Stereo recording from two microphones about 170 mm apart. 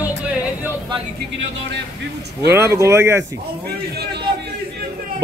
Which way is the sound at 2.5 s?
15° right (ahead or behind).